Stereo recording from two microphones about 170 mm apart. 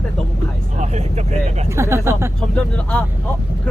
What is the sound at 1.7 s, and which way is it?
Speech, 15° right (ahead or behind).